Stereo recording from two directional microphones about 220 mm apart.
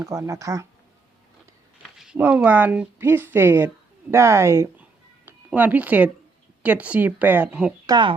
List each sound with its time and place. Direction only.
0.0 s a woman's voice: 15° right (ahead or behind)
2.0 s a woman's voice: 5° right (ahead or behind)
7.9 s speech: 20° right (ahead or behind)